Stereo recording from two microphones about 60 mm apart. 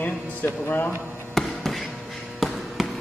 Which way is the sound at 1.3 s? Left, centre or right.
Centre.